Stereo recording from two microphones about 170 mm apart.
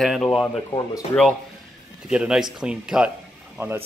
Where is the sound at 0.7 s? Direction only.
25° left (ahead or behind).